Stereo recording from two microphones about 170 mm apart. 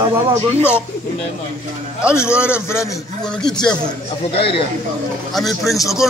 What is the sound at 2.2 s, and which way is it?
Speech, 5° right (ahead or behind).